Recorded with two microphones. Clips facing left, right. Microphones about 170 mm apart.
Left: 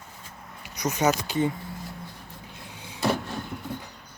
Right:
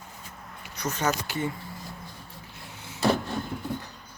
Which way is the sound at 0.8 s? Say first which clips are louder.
Left 4 dB; 15° left (ahead or behind).